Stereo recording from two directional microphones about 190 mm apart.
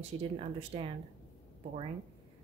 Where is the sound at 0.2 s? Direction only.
30° right (ahead or behind).